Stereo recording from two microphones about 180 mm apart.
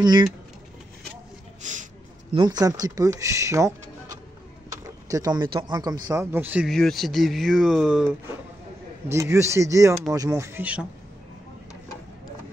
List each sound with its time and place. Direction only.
0.0 s speech: 25° right (ahead or behind)
1.6 s a sound: 45° right (ahead or behind)
2.3 s speech: 25° right (ahead or behind)
6.7 s speech: centre (ahead or behind)
9.1 s speech: 15° right (ahead or behind)